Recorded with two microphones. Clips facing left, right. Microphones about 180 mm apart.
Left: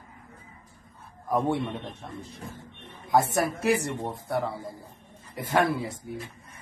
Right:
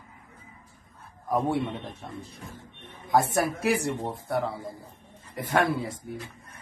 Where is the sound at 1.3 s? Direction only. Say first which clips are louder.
Even; 5° right (ahead or behind).